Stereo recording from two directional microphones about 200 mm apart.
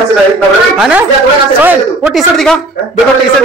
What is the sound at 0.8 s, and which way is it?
Speech, 5° right (ahead or behind).